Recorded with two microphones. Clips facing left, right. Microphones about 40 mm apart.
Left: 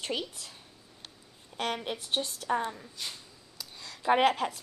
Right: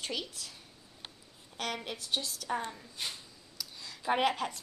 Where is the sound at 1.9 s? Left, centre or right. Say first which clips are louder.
Left 3 dB; left.